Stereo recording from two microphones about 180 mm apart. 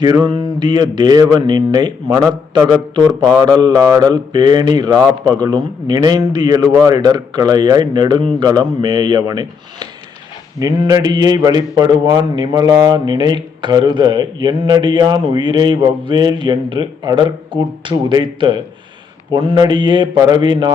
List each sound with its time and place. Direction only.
0.0 s a man's voice: 25° right (ahead or behind)
10.6 s a man's voice: 20° right (ahead or behind)